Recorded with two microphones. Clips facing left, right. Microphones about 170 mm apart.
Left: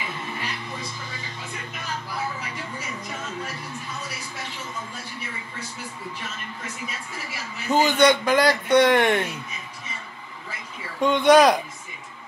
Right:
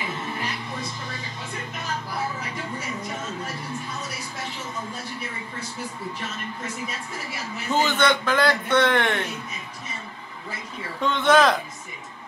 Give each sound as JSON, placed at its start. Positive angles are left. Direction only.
{"t": 7.7, "sound": "a man's voice", "side_deg": 15}
{"t": 11.0, "sound": "a man's voice", "side_deg": 15}